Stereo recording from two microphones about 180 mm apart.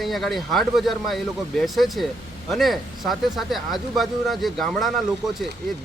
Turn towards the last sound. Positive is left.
turn(degrees=0)  # may be behind; listen again after turning